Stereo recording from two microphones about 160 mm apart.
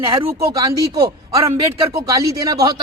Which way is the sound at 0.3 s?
20° right (ahead or behind).